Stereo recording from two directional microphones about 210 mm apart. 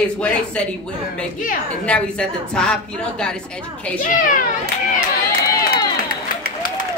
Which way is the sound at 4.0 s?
40° left (ahead or behind).